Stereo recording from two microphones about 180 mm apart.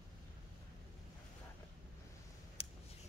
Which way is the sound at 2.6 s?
30° left (ahead or behind).